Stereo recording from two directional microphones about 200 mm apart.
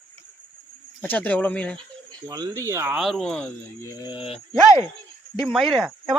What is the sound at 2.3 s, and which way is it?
Speech, 15° right (ahead or behind).